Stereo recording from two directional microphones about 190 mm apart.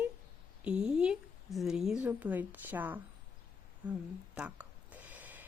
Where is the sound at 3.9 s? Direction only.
5° right (ahead or behind).